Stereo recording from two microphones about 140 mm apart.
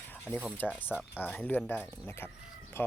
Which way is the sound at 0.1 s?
15° left (ahead or behind).